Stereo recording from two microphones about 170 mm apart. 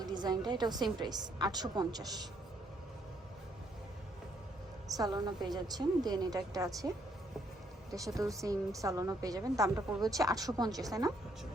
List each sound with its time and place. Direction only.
0.0 s a woman's voice: 25° right (ahead or behind)
4.9 s a woman's voice: 25° right (ahead or behind)
7.9 s a woman's voice: 20° right (ahead or behind)